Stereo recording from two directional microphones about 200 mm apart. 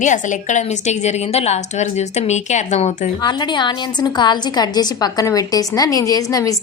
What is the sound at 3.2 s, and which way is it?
A woman's voice, 20° left (ahead or behind).